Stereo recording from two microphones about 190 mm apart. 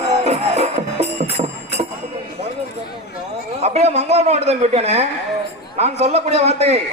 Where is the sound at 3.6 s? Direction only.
35° right (ahead or behind).